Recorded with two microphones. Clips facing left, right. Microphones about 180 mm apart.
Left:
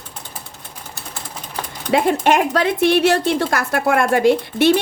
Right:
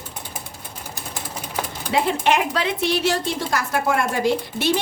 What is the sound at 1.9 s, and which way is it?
Speech, 50° left (ahead or behind).